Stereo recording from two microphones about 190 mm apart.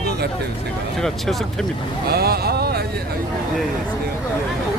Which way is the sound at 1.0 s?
Centre (ahead or behind).